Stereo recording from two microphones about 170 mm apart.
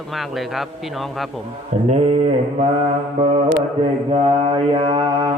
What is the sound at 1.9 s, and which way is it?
Mantra, 40° right (ahead or behind).